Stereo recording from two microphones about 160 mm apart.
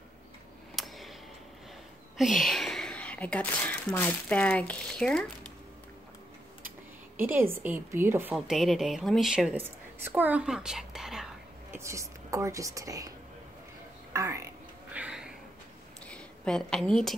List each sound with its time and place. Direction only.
0.7 s a sound: centre (ahead or behind)
2.1 s speech: centre (ahead or behind)
7.2 s a woman's voice: 15° right (ahead or behind)
8.4 s a woman's voice: centre (ahead or behind)
11.7 s speech: 20° right (ahead or behind)
14.1 s a sound: 20° right (ahead or behind)
16.1 s a woman's voice: 5° left (ahead or behind)